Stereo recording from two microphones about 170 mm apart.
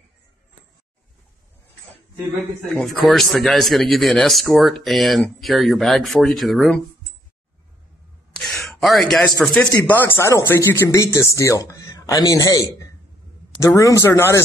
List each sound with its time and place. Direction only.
2.8 s speech: centre (ahead or behind)
8.4 s a sound: centre (ahead or behind)
9.4 s speech: 5° left (ahead or behind)